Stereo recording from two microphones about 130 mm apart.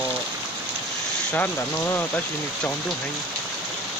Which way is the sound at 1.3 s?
15° left (ahead or behind).